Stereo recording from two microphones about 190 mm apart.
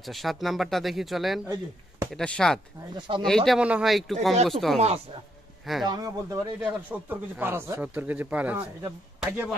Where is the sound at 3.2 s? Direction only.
Centre (ahead or behind).